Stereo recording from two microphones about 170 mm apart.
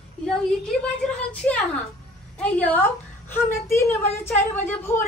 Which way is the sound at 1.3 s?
10° left (ahead or behind).